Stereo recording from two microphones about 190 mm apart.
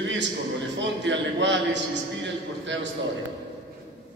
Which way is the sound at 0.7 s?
70° right (ahead or behind).